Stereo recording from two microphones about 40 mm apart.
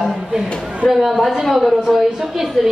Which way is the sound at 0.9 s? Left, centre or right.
Centre.